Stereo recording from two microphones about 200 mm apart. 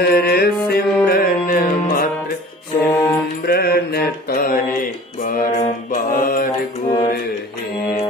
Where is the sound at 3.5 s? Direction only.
50° left (ahead or behind).